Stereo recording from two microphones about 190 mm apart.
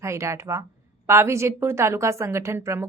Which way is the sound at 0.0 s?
15° right (ahead or behind).